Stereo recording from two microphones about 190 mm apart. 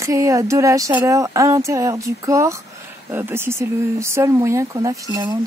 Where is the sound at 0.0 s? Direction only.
15° right (ahead or behind).